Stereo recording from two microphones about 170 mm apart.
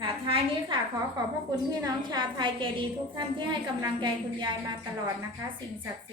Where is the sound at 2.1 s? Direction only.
25° right (ahead or behind).